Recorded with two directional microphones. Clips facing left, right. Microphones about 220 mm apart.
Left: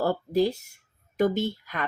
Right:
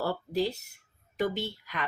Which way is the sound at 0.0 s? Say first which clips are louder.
Left 6 dB; 45° left (ahead or behind).